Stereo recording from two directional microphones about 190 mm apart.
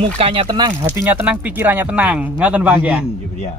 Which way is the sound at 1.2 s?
10° right (ahead or behind).